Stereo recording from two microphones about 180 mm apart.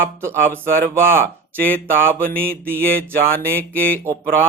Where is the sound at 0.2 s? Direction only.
15° right (ahead or behind).